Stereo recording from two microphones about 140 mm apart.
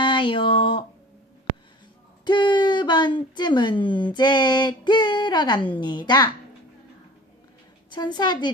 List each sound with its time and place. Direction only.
0.0 s a sound: 35° left (ahead or behind)
2.2 s a woman's voice: 35° left (ahead or behind)
7.9 s a woman's voice: 30° left (ahead or behind)